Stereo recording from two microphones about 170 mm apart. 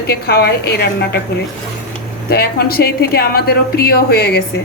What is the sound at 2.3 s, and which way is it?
A woman's voice, 70° left (ahead or behind).